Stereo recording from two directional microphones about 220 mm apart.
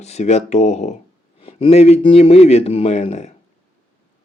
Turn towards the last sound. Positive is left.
turn(degrees=30)  # may be behind; listen again after turning